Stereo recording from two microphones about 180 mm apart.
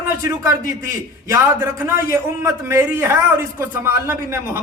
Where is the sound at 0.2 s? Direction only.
15° right (ahead or behind).